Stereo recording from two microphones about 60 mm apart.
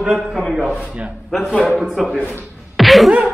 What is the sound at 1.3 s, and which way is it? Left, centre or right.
Speech, centre.